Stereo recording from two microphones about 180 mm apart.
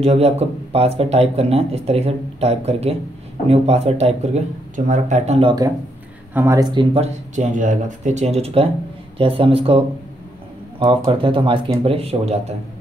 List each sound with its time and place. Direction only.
0.0 s speech: 35° right (ahead or behind)
6.3 s speech: 15° right (ahead or behind); by 9.8 s 30° right (ahead or behind)
11.1 s speech: 30° right (ahead or behind)